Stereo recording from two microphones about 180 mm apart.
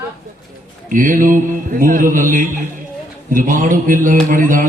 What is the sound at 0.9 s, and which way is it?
A man's voice, 50° right (ahead or behind).